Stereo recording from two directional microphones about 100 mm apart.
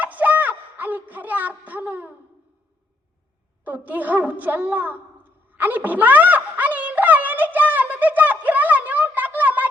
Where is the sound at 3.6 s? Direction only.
15° right (ahead or behind).